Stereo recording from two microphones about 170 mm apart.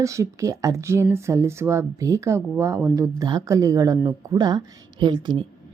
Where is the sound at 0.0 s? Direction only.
20° right (ahead or behind).